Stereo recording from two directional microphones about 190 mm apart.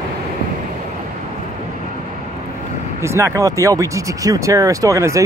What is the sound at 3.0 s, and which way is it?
Speech, 15° right (ahead or behind).